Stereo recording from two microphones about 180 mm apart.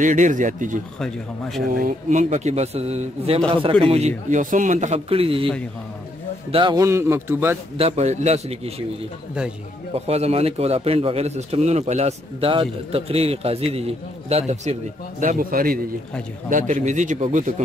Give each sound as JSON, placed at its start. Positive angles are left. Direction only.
{"t": 0.0, "sound": "a man's voice", "side_deg": -45}
{"t": 0.9, "sound": "speech", "side_deg": 5}
{"t": 1.8, "sound": "a man's voice", "side_deg": -45}
{"t": 4.3, "sound": "a man's voice", "side_deg": -45}
{"t": 6.5, "sound": "a man's voice", "side_deg": -25}
{"t": 7.7, "sound": "a man's voice", "side_deg": -35}
{"t": 9.9, "sound": "a man's voice", "side_deg": -35}